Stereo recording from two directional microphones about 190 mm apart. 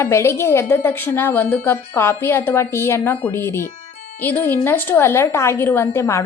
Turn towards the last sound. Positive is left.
turn(degrees=15)  # may be behind; listen again after turning